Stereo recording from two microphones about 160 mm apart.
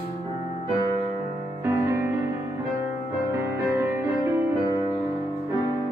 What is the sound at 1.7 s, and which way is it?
Music, 15° right (ahead or behind).